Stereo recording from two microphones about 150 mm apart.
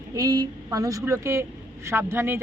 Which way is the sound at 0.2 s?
25° right (ahead or behind).